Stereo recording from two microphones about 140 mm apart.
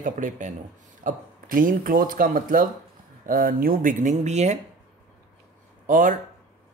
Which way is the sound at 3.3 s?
90° right.